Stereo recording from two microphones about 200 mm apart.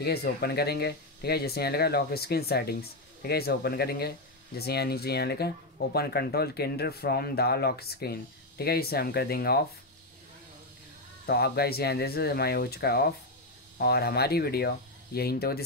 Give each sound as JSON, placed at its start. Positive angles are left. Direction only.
{"t": 0.0, "sound": "speech", "side_deg": 50}
{"t": 11.2, "sound": "speech", "side_deg": 50}